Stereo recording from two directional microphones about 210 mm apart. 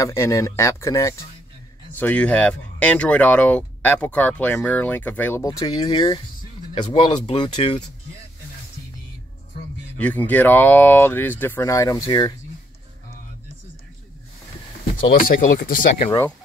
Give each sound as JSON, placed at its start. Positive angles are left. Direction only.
{"t": 0.0, "sound": "speech", "side_deg": 15}
{"t": 9.9, "sound": "speech", "side_deg": 5}
{"t": 15.0, "sound": "speech", "side_deg": 45}